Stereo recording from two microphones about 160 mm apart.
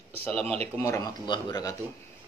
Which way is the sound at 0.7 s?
20° left (ahead or behind).